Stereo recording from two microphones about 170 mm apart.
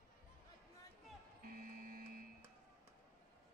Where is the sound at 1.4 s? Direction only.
60° right (ahead or behind).